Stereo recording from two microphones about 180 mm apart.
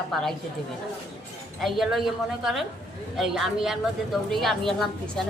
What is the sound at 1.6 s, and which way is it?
A woman's voice, centre (ahead or behind).